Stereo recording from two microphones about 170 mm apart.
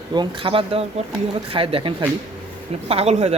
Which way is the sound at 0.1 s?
30° right (ahead or behind).